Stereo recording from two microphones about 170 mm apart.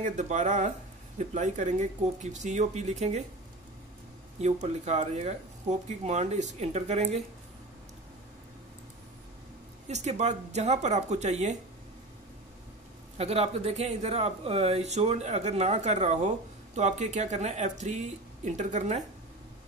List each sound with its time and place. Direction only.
0.0 s speech: 45° right (ahead or behind)
4.4 s speech: 40° right (ahead or behind)
9.8 s speech: 40° right (ahead or behind)
13.2 s speech: 40° right (ahead or behind)